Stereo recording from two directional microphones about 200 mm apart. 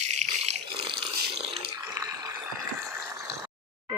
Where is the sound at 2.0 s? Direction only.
15° right (ahead or behind).